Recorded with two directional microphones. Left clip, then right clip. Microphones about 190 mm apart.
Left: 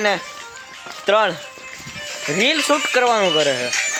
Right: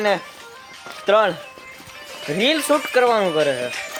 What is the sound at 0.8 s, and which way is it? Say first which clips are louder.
Music: even; 30° left (ahead or behind).